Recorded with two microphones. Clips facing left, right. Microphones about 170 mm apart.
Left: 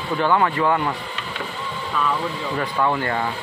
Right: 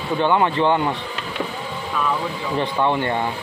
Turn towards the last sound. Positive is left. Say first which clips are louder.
# right 2 dB
turn(degrees=-25)  # may be behind; listen again after turning